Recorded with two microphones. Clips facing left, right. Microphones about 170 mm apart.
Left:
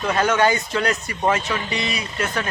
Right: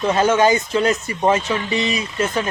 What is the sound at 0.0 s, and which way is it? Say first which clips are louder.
Speech: right 3 dB; 20° right (ahead or behind).